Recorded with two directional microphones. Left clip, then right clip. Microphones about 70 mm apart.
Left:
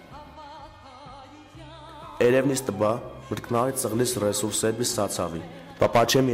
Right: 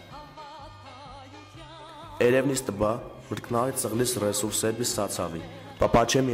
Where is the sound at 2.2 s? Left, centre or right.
Centre.